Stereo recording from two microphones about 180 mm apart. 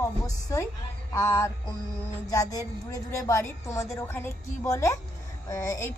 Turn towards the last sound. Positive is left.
turn(degrees=15)  # may be behind; listen again after turning